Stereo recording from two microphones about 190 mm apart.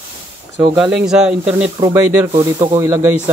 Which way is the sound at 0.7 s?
5° right (ahead or behind).